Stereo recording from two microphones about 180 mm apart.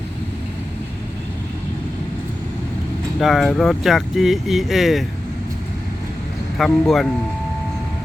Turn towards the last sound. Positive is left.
turn(degrees=0)  # may be behind; listen again after turning